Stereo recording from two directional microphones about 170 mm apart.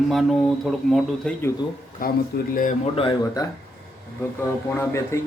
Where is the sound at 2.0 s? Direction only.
55° left (ahead or behind).